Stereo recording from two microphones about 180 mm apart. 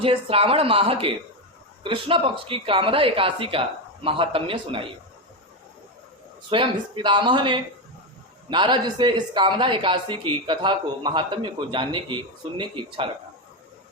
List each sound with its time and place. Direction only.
0.0 s speech: 30° right (ahead or behind)
6.5 s speech: 25° right (ahead or behind)